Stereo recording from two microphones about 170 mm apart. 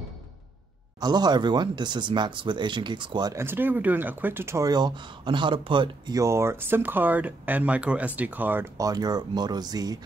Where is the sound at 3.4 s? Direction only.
10° right (ahead or behind); by 6.2 s 30° right (ahead or behind).